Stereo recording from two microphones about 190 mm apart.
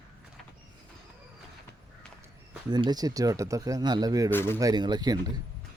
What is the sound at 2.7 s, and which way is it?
Speech, 20° right (ahead or behind).